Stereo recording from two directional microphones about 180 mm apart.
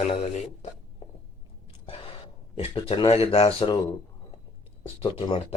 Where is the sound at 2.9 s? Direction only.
35° left (ahead or behind).